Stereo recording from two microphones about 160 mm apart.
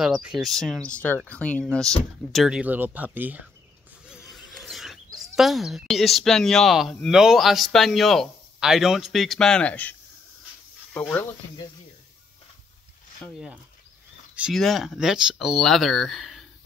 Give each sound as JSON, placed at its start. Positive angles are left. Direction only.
{"t": 0.0, "sound": "speech", "side_deg": -5}
{"t": 13.2, "sound": "speech", "side_deg": 0}